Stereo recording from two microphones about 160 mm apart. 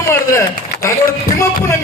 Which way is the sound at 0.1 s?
15° left (ahead or behind).